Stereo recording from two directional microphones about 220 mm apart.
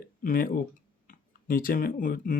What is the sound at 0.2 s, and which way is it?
Speech, 40° left (ahead or behind).